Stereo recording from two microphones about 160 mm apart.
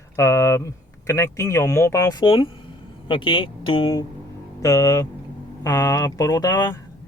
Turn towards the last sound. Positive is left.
turn(degrees=25)  # may be behind; listen again after turning